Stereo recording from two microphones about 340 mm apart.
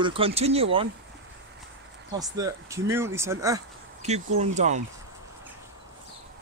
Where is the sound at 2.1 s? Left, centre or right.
Centre.